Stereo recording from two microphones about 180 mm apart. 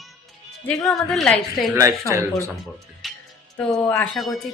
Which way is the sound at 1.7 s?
15° right (ahead or behind).